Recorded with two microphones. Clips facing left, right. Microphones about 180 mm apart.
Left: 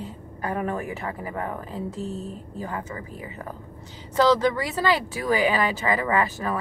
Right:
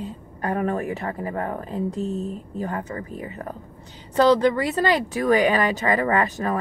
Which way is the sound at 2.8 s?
35° right (ahead or behind).